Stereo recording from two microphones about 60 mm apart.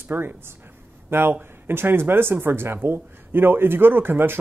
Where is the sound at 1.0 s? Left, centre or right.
Right.